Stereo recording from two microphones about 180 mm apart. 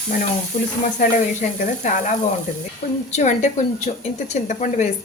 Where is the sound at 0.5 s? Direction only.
40° left (ahead or behind).